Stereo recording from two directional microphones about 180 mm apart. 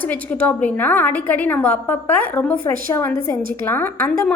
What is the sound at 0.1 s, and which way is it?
A woman's voice, 10° left (ahead or behind).